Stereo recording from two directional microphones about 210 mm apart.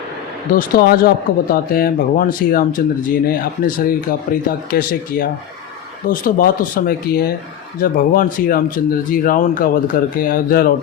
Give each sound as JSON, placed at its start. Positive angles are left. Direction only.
{"t": 0.5, "sound": "speech", "side_deg": 45}